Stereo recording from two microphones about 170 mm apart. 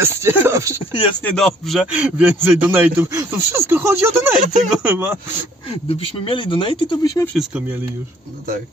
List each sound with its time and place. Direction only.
0.0 s a man's voice: 15° right (ahead or behind)
1.2 s a man's voice: centre (ahead or behind)
5.7 s speech: 35° left (ahead or behind)